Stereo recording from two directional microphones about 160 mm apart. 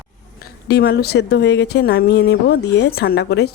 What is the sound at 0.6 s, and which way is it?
Speech, 85° left.